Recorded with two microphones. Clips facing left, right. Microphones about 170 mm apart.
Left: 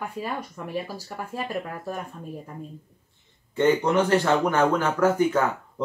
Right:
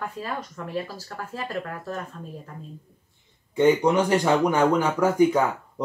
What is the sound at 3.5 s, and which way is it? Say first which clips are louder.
Speech: right 2 dB; 10° right (ahead or behind).